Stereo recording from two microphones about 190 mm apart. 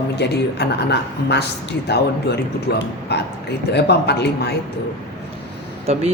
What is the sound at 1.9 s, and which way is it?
Speech, 60° left (ahead or behind).